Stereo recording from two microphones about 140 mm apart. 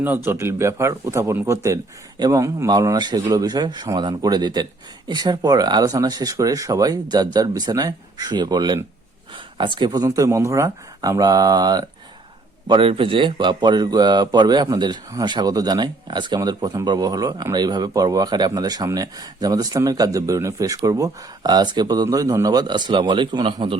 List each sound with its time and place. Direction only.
0.3 s a man's voice: 15° right (ahead or behind); by 23.7 s 35° right (ahead or behind)